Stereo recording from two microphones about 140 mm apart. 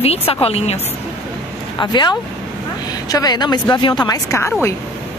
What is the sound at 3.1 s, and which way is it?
Speech, 30° left (ahead or behind).